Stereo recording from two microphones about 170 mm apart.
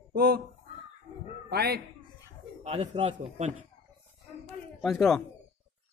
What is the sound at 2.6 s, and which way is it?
Speech, 40° right (ahead or behind).